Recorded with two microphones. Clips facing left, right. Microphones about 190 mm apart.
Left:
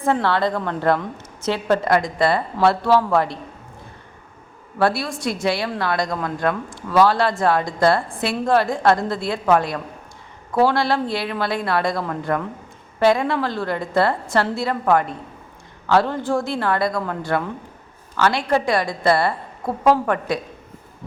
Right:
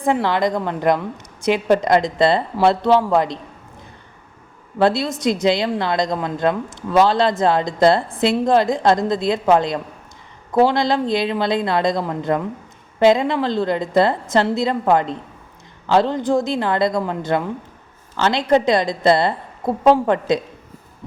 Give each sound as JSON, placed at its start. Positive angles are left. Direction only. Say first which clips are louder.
{"t": 0.0, "sound": "a woman's voice", "louder": "right 1 dB", "side_deg": -15}
{"t": 4.8, "sound": "speech", "louder": "right 3 dB", "side_deg": -20}